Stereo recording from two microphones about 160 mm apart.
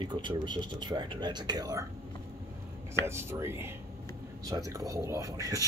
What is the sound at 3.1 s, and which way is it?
Speech, 15° right (ahead or behind).